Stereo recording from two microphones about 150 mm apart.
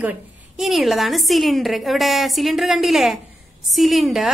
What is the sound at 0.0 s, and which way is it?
A woman's voice, 5° right (ahead or behind).